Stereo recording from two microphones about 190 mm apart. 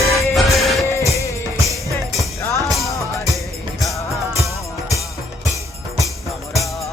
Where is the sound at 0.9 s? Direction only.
15° left (ahead or behind).